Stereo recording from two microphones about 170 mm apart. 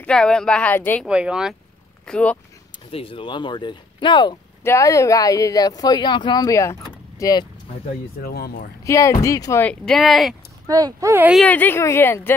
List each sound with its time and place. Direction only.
0.0 s speech: 5° left (ahead or behind)
1.0 s speech: 5° right (ahead or behind)
2.0 s speech: 5° left (ahead or behind)
2.9 s speech: 30° left (ahead or behind)
8.2 s speech: 65° left (ahead or behind)
8.8 s speech: 20° left (ahead or behind)
9.7 s speech: centre (ahead or behind)
10.7 s speech: 20° right (ahead or behind)
11.3 s speech: 10° left (ahead or behind)